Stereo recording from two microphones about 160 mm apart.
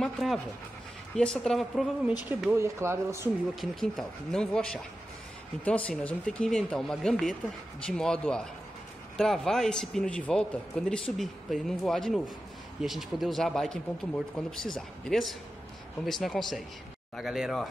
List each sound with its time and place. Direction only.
0.0 s a man's voice: centre (ahead or behind)
2.2 s speech: 15° right (ahead or behind)
3.8 s a man's voice: 5° left (ahead or behind)